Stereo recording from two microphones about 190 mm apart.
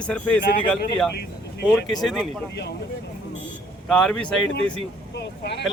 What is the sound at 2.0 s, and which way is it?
Speech, centre (ahead or behind).